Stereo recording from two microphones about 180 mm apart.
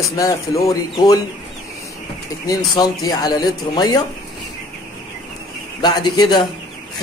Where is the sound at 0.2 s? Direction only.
20° left (ahead or behind).